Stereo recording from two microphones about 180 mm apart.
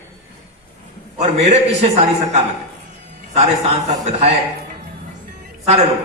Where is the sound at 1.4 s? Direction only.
35° right (ahead or behind).